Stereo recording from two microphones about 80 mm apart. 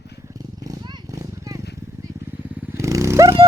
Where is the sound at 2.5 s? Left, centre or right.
Centre.